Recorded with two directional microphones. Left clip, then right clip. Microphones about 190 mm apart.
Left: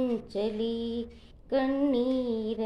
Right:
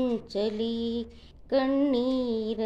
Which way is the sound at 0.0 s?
35° right (ahead or behind).